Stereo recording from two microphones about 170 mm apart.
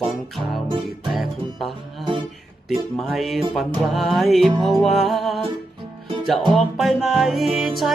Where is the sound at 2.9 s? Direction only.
Centre (ahead or behind).